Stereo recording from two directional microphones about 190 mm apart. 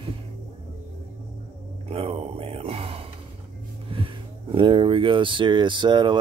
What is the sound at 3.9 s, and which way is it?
Speech, 25° right (ahead or behind).